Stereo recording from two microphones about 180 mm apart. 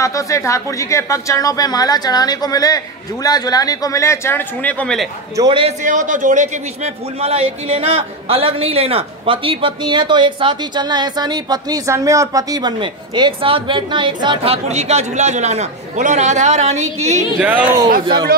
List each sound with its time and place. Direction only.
0.0 s a man's voice: 15° left (ahead or behind)
5.4 s a man's voice: 30° right (ahead or behind)
5.9 s a man's voice: 45° right (ahead or behind)
17.4 s speech: 5° right (ahead or behind)